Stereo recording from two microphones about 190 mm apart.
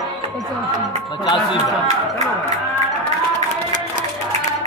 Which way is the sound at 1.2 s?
25° left (ahead or behind).